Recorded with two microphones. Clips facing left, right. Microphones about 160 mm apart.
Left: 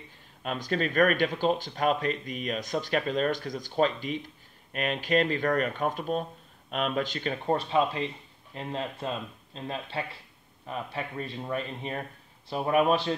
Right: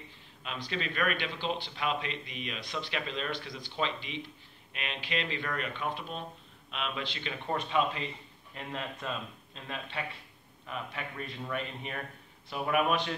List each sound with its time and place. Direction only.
0.4 s speech: 45° left (ahead or behind)